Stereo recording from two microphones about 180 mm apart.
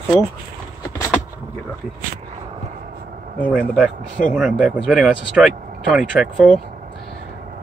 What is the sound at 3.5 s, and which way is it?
Speech, 5° right (ahead or behind).